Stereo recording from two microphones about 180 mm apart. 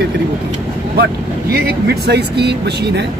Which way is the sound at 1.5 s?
65° right (ahead or behind).